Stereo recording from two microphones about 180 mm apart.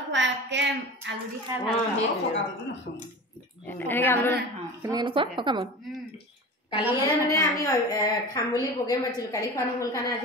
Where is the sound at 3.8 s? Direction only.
10° left (ahead or behind).